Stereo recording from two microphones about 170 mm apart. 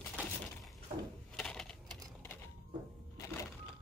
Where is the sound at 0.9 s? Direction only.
45° right (ahead or behind).